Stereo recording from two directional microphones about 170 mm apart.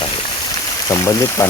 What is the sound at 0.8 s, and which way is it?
Speech, 15° left (ahead or behind).